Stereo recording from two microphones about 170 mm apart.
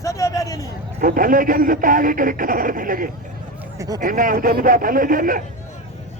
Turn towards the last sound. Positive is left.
turn(degrees=-55)  # may be behind; listen again after turning